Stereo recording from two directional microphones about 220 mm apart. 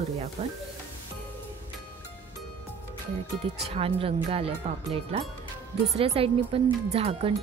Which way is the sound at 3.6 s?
25° right (ahead or behind).